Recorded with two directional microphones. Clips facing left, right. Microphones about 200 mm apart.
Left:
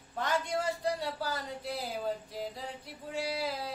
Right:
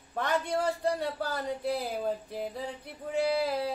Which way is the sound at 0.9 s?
60° right (ahead or behind).